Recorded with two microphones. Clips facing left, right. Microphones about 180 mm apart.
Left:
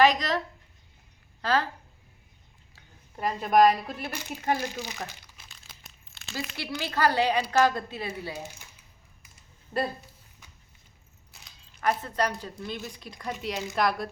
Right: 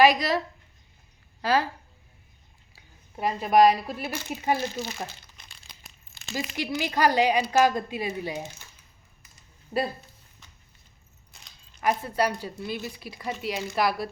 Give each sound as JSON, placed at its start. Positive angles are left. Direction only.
{"t": 0.0, "sound": "a woman's voice", "side_deg": -10}
{"t": 2.7, "sound": "a woman's voice", "side_deg": -10}
{"t": 4.6, "sound": "speech", "side_deg": 15}
{"t": 5.0, "sound": "crumpling", "side_deg": 10}
{"t": 6.6, "sound": "a woman's voice", "side_deg": -15}
{"t": 9.7, "sound": "a woman's voice", "side_deg": -10}
{"t": 11.3, "sound": "a sound", "side_deg": 5}
{"t": 11.8, "sound": "a woman's voice", "side_deg": -10}